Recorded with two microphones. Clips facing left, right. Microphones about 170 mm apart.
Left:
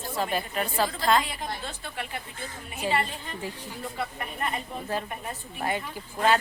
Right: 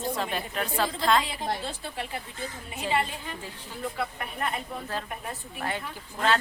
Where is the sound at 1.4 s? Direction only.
35° right (ahead or behind).